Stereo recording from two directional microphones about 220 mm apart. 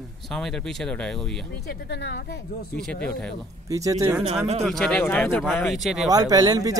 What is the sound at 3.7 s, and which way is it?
Speech, 15° right (ahead or behind).